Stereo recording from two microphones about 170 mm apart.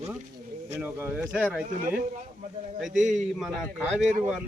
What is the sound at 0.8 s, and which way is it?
Speech, 10° right (ahead or behind).